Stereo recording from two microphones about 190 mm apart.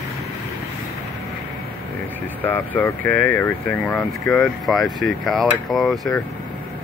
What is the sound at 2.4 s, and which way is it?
Speech, 10° left (ahead or behind).